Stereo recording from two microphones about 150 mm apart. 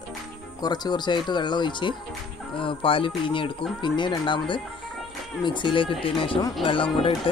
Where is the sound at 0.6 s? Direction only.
30° left (ahead or behind).